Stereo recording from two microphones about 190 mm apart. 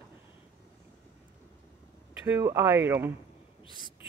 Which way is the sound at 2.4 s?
15° right (ahead or behind).